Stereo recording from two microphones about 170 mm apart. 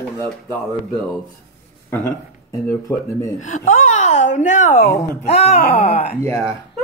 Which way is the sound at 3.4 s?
45° left (ahead or behind).